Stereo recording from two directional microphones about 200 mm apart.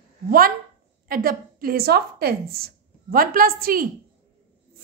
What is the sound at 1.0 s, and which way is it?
A woman's voice, 45° right (ahead or behind).